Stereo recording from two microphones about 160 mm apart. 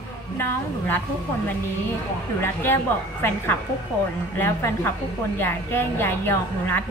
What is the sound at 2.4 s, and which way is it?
A woman's voice, 15° left (ahead or behind).